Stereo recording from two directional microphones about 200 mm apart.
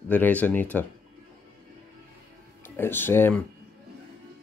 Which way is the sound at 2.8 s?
10° left (ahead or behind).